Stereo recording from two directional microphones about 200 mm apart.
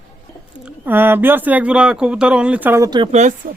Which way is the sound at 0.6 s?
10° right (ahead or behind).